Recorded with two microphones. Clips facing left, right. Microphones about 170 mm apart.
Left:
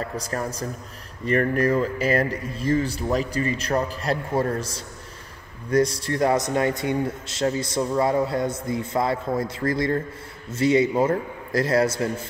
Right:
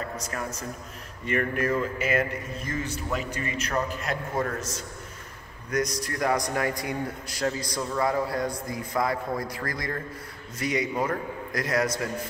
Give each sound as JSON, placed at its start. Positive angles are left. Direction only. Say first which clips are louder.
{"t": 0.2, "sound": "a man's voice", "louder": "left 5 dB", "side_deg": 35}